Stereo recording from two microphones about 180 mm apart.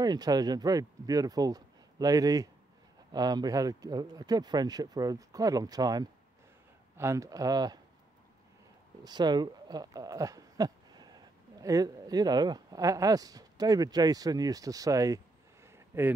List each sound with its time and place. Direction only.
0.0 s speech: 20° right (ahead or behind)
9.0 s speech: 25° right (ahead or behind)
15.6 s a sound: 10° right (ahead or behind)